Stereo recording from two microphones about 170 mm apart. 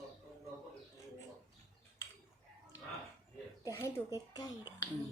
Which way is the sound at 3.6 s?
15° left (ahead or behind).